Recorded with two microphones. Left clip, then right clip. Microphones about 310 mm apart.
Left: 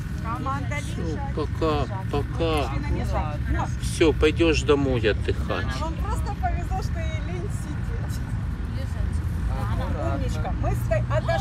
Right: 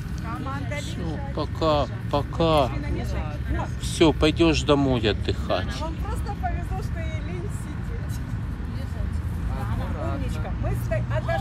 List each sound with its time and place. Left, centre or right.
1.3 s speech: centre
2.3 s speech: centre
4.0 s speech: centre
10.9 s speech: centre